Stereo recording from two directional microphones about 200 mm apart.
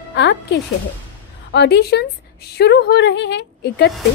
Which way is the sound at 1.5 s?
55° left (ahead or behind).